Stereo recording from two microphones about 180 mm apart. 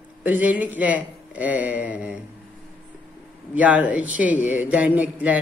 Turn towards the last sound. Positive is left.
turn(degrees=-10)  # may be behind; listen again after turning